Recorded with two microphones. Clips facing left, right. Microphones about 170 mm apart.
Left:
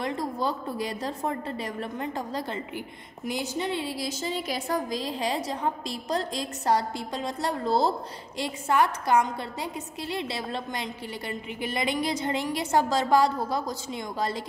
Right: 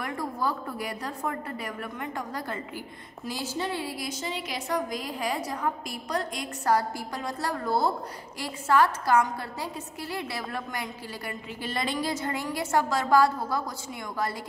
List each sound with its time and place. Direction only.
0.0 s a woman's voice: 25° left (ahead or behind)